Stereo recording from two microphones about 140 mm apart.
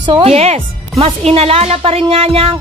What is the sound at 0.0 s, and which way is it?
Speech, 35° right (ahead or behind).